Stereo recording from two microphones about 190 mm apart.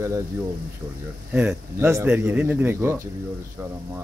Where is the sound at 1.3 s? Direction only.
10° right (ahead or behind).